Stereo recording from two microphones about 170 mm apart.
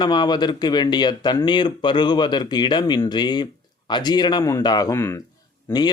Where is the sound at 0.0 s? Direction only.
25° left (ahead or behind).